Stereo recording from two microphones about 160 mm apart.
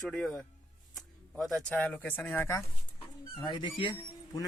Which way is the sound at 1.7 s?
10° left (ahead or behind).